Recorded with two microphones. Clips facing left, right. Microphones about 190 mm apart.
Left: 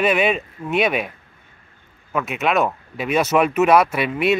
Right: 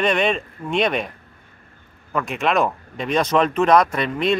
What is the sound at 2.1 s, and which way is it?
Speech, 5° left (ahead or behind).